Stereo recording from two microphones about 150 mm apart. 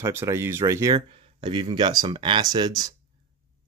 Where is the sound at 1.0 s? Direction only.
30° right (ahead or behind).